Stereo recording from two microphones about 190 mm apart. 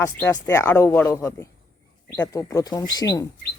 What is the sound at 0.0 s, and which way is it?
Speech, 15° left (ahead or behind).